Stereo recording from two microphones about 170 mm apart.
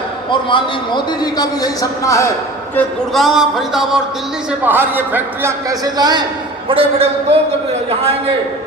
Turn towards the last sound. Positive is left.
turn(degrees=-35)  # may be behind; listen again after turning